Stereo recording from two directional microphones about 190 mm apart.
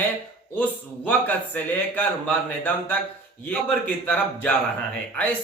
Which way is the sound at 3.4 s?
10° left (ahead or behind).